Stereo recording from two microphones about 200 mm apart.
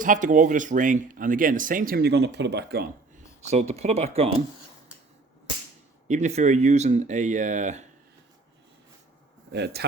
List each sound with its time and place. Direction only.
0.0 s speech: 40° right (ahead or behind)
3.5 s speech: 35° right (ahead or behind)
6.1 s speech: 35° right (ahead or behind)
9.5 s a man's voice: 55° right (ahead or behind)